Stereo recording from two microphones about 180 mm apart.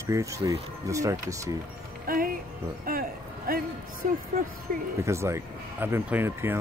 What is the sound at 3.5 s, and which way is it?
Speech, 55° right (ahead or behind).